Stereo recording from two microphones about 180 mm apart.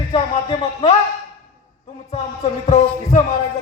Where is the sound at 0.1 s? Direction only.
25° left (ahead or behind).